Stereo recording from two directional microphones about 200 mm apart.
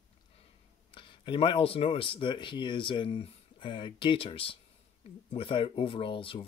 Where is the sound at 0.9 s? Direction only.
25° left (ahead or behind).